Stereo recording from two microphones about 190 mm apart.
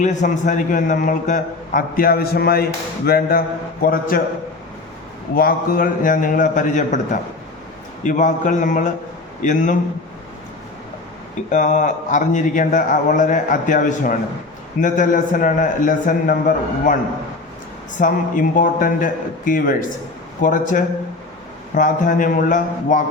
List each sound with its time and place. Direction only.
0.0 s a man's voice: 40° left (ahead or behind)
5.3 s a man's voice: 50° left (ahead or behind)
11.4 s a man's voice: 40° left (ahead or behind)
18.0 s a man's voice: 45° left (ahead or behind)